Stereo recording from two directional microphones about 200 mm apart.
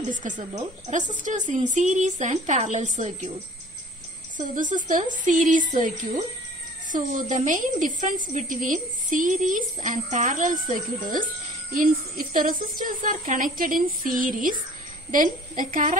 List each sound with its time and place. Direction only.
0.0 s a woman's voice: 40° right (ahead or behind)
4.4 s a woman's voice: 40° right (ahead or behind)
12.4 s a woman's voice: 45° right (ahead or behind)